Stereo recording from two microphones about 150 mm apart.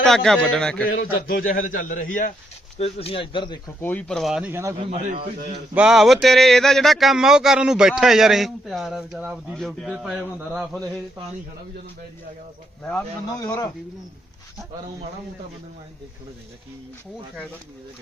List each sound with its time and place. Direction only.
0.0 s speech: 5° left (ahead or behind)
1.3 s a man's voice: 60° left (ahead or behind)
2.7 s speech: 40° left (ahead or behind)
3.8 s speech: 10° left (ahead or behind)
4.9 s a man's voice: 45° right (ahead or behind)
5.7 s speech: 5° right (ahead or behind)
12.8 s speech: 10° left (ahead or behind)